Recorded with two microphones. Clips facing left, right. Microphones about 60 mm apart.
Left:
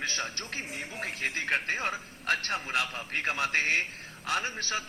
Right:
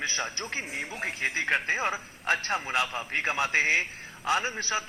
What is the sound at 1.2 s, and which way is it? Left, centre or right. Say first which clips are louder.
Speech: right 3 dB; right.